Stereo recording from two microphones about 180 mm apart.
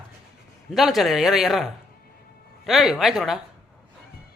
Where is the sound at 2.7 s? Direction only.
Centre (ahead or behind).